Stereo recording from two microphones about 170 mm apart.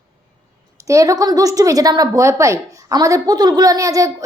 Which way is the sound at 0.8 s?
20° right (ahead or behind).